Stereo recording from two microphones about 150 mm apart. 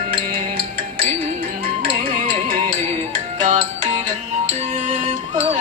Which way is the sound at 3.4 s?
55° right (ahead or behind).